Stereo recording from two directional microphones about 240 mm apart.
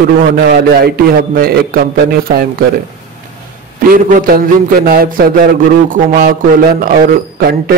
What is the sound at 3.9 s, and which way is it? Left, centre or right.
Speech, right.